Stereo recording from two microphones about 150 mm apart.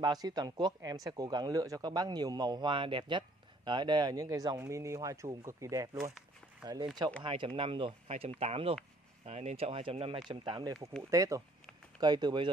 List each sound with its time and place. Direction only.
0.0 s speech: 25° right (ahead or behind)